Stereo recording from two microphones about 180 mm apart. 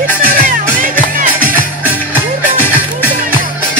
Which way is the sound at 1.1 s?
50° right (ahead or behind).